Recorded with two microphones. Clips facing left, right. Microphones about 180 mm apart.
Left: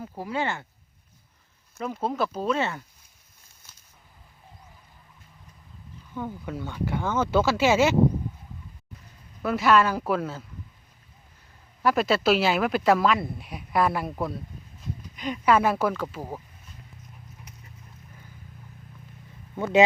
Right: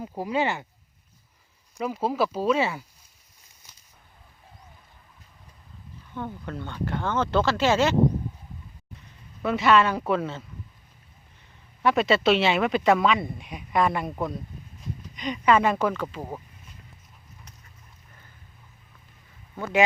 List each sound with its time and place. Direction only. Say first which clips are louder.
0.0 s speech: right 3 dB; 15° right (ahead or behind)
1.8 s speech: right 2 dB; 5° right (ahead or behind)
6.1 s speech: left 1 dB; 5° left (ahead or behind)
9.4 s speech: even; centre (ahead or behind)
11.8 s speech: right 1 dB; centre (ahead or behind)
19.5 s speech: left 4 dB; 20° left (ahead or behind)